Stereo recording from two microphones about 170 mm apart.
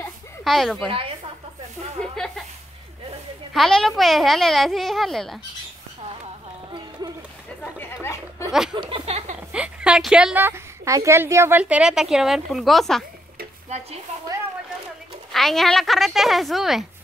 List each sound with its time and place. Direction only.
0.4 s speech: centre (ahead or behind)
0.8 s a woman's voice: 30° right (ahead or behind)
2.1 s a sound: centre (ahead or behind)
3.5 s a woman's voice: centre (ahead or behind)
8.0 s a sound: 15° left (ahead or behind)
8.7 s a sound: 30° right (ahead or behind)
9.5 s a woman's voice: 5° right (ahead or behind)
13.7 s speech: 40° right (ahead or behind)
15.3 s a woman's voice: centre (ahead or behind)